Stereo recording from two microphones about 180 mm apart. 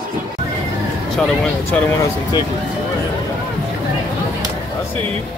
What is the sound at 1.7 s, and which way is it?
Speech, 10° left (ahead or behind).